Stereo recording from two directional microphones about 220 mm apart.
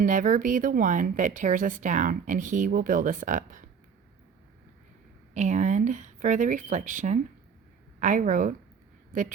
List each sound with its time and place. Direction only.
0.0 s speech: 35° right (ahead or behind)
5.3 s speech: 35° right (ahead or behind)